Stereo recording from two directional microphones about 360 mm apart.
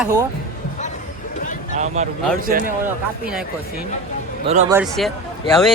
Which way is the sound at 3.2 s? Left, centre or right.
Centre.